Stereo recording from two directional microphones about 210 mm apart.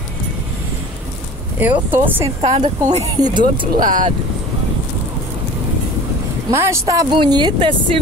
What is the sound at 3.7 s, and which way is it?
Speech, 40° right (ahead or behind).